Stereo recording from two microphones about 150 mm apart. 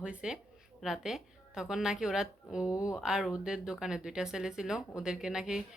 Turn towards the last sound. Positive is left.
turn(degrees=-5)  # may be behind; listen again after turning